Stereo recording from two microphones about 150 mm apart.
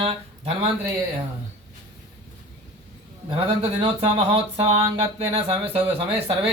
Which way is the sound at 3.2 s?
40° right (ahead or behind).